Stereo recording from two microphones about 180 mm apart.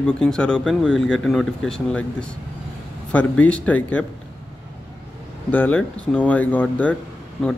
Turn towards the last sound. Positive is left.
turn(degrees=0)  # may be behind; listen again after turning